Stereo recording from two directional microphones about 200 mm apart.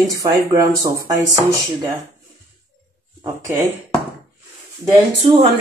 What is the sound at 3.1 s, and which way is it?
Speech, 15° right (ahead or behind).